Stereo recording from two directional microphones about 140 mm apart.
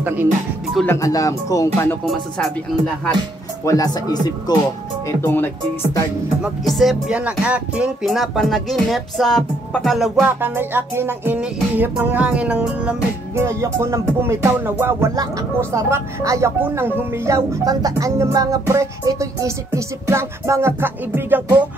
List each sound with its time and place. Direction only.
0.8 s speech: 25° left (ahead or behind)
2.0 s speech: 5° left (ahead or behind)
3.6 s speech: 25° left (ahead or behind)
5.2 s speech: 15° left (ahead or behind)
6.4 s speech: centre (ahead or behind)
10.4 s music: 15° right (ahead or behind)
13.4 s speech: 20° right (ahead or behind)